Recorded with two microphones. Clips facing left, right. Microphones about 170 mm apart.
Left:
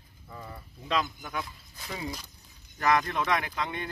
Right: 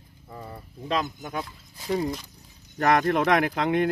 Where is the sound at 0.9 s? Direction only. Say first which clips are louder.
Right 3 dB; 40° right (ahead or behind).